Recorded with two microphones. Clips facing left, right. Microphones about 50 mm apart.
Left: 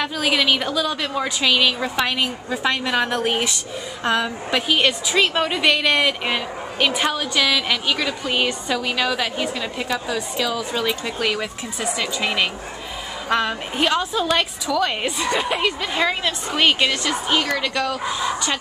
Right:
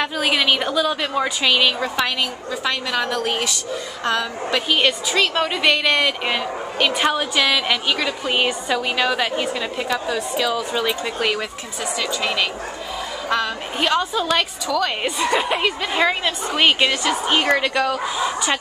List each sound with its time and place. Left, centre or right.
0.0 s a woman's voice: centre
2.5 s a woman's voice: centre
4.6 s a woman's voice: centre
11.8 s a woman's voice: centre
13.7 s a woman's voice: centre
17.3 s a woman's voice: right
17.7 s a woman's voice: centre